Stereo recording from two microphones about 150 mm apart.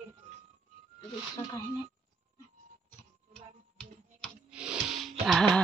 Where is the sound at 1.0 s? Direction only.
25° left (ahead or behind).